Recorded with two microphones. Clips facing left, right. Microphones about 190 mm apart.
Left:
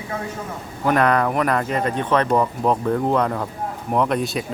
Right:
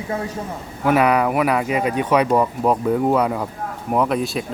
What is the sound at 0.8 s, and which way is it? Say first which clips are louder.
Speech: right 2 dB; 10° right (ahead or behind).